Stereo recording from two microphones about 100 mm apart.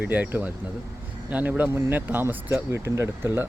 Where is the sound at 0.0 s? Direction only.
15° right (ahead or behind).